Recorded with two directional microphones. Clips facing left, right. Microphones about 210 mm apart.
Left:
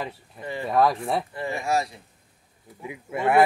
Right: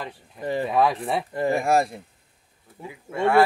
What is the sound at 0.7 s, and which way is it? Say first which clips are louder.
Speech: left 1 dB; centre (ahead or behind).